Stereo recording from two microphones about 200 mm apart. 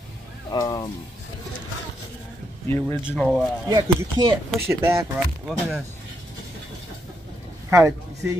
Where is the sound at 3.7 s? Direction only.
20° right (ahead or behind).